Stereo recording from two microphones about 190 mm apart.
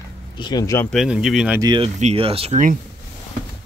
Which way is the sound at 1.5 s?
25° right (ahead or behind).